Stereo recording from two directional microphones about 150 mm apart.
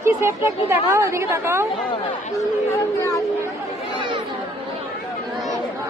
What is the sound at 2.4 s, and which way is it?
Speech, 20° left (ahead or behind).